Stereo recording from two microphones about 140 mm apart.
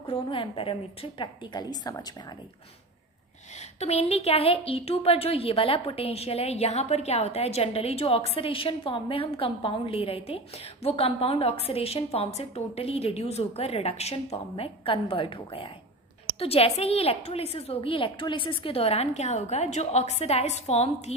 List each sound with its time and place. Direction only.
0.0 s a woman's voice: 40° left (ahead or behind)
3.8 s a woman's voice: 50° left (ahead or behind)